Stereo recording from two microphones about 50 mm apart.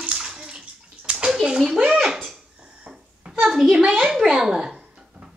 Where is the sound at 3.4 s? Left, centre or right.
Centre.